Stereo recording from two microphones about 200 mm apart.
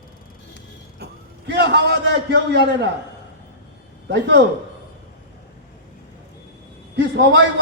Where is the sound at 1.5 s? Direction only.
55° right (ahead or behind).